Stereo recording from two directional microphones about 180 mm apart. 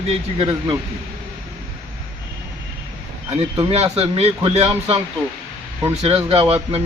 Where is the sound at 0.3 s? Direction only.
30° right (ahead or behind).